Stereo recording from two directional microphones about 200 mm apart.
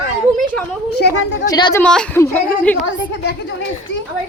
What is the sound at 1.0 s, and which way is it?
Speech, 55° left (ahead or behind).